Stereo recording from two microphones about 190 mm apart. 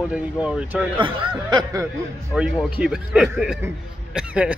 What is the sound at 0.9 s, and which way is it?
Speech, 25° right (ahead or behind).